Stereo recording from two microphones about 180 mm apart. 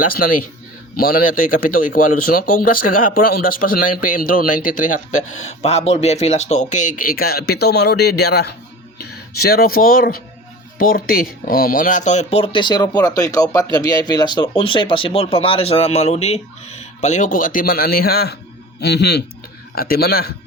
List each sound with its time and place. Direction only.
0.0 s a man's voice: 55° left (ahead or behind)
19.7 s a man's voice: 55° left (ahead or behind)